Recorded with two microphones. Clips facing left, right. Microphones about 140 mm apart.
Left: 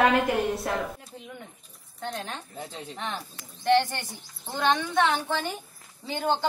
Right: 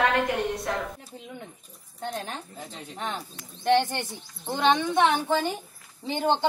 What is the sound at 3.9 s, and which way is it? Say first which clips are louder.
A woman's voice: right 4 dB; 20° right (ahead or behind).